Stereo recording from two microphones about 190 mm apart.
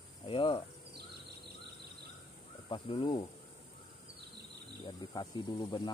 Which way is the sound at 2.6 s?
25° left (ahead or behind).